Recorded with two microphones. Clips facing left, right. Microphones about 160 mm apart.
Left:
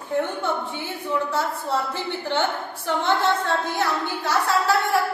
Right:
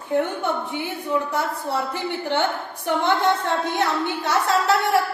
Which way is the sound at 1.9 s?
15° right (ahead or behind).